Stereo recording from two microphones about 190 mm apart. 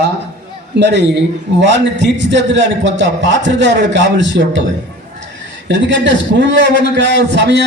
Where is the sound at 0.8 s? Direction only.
65° right (ahead or behind).